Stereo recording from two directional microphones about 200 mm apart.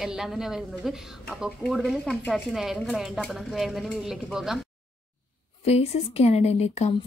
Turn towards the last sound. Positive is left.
turn(degrees=35)  # may be behind; listen again after turning